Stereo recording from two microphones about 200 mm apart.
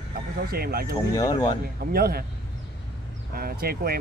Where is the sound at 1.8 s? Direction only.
50° right (ahead or behind).